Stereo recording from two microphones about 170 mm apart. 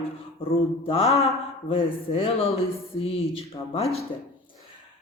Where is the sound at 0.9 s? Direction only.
35° left (ahead or behind).